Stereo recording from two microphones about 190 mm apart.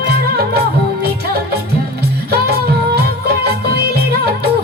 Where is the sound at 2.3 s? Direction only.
55° right (ahead or behind).